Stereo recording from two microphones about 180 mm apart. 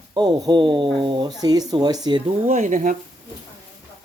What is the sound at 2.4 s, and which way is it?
Speech, 40° right (ahead or behind).